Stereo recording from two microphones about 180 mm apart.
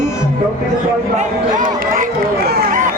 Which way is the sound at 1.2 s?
45° right (ahead or behind).